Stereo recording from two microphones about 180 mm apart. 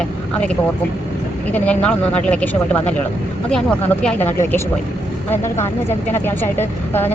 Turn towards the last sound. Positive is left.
turn(degrees=10)  # may be behind; listen again after turning